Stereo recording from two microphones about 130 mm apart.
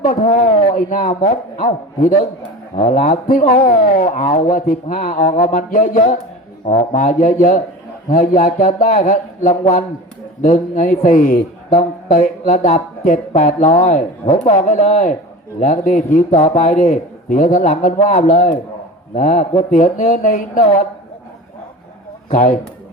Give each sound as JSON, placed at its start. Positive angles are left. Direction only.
{"t": 0.0, "sound": "a man's voice", "side_deg": 80}
{"t": 8.1, "sound": "a man's voice", "side_deg": 90}
{"t": 15.6, "sound": "a man's voice", "side_deg": 85}
{"t": 16.1, "sound": "a man's voice", "side_deg": 65}